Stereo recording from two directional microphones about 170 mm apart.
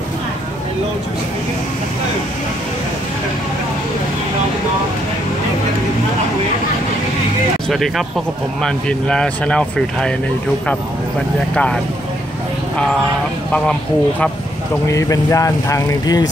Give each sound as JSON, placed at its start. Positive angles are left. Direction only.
{"t": 8.6, "sound": "speech", "side_deg": 5}
{"t": 11.5, "sound": "speech", "side_deg": 5}
{"t": 14.9, "sound": "speech", "side_deg": 20}